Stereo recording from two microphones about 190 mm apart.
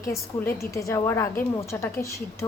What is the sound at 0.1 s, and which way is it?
A woman's voice, 15° left (ahead or behind).